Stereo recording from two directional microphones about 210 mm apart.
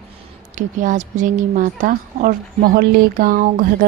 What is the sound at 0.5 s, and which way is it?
A woman's voice, 40° right (ahead or behind).